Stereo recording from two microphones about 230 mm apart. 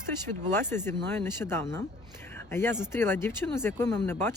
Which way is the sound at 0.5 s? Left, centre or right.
Centre.